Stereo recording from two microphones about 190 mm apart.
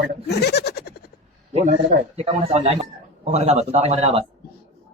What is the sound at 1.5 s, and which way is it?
A man's voice, 35° right (ahead or behind).